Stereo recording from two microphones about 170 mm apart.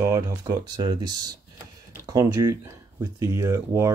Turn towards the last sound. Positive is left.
turn(degrees=-15)  # may be behind; listen again after turning